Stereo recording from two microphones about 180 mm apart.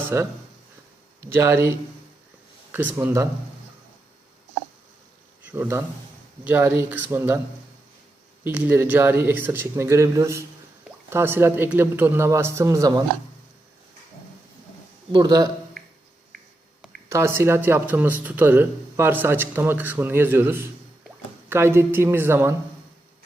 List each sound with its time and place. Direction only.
0.1 s speech: 15° right (ahead or behind)
2.7 s speech: 15° right (ahead or behind)
5.5 s speech: 15° right (ahead or behind)
8.4 s speech: 10° right (ahead or behind)
15.1 s a man's voice: 20° right (ahead or behind)
17.1 s speech: 15° right (ahead or behind)